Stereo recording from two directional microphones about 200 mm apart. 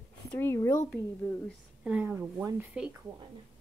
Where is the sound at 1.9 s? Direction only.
10° right (ahead or behind).